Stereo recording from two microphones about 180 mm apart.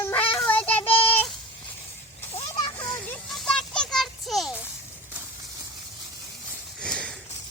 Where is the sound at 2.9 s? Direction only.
5° left (ahead or behind).